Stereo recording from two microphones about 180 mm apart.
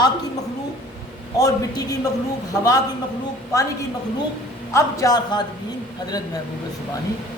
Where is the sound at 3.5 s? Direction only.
20° left (ahead or behind).